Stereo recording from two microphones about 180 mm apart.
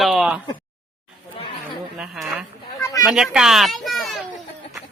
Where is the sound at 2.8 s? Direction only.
20° left (ahead or behind).